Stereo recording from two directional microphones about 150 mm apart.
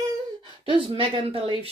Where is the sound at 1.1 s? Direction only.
40° right (ahead or behind).